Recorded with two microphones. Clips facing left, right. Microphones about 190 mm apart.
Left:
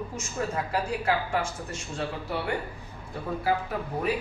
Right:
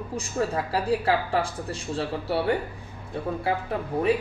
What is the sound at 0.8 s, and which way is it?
Speech, 35° right (ahead or behind).